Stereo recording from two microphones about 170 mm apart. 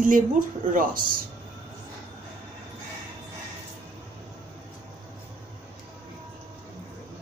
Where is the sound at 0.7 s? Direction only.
55° right (ahead or behind).